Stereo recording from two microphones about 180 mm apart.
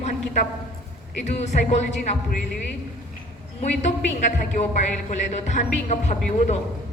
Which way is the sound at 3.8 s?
40° left (ahead or behind).